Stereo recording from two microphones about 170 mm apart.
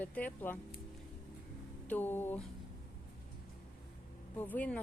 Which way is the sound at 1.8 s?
10° left (ahead or behind).